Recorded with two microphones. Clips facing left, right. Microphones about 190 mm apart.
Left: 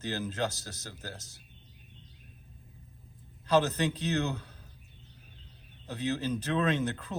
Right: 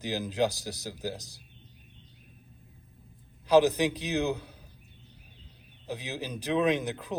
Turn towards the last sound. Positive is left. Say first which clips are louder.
# right 2 dB
turn(degrees=-15)  # may be behind; listen again after turning